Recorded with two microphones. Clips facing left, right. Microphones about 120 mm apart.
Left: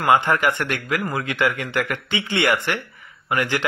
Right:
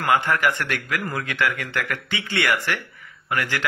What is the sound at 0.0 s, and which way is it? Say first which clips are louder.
Speech: left 3 dB; 20° left (ahead or behind).